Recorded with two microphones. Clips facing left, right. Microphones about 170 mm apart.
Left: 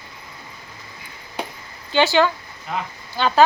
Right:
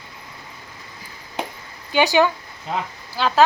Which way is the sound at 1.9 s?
15° right (ahead or behind).